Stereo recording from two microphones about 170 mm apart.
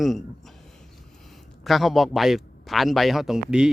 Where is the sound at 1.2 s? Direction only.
Centre (ahead or behind).